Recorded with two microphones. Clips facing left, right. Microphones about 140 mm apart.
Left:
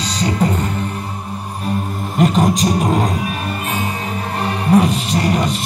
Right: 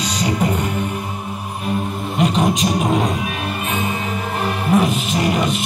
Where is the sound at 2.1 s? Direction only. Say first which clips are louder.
Left 3 dB; centre (ahead or behind).